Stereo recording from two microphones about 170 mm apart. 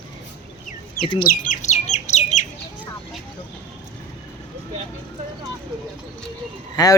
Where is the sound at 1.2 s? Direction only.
50° left (ahead or behind).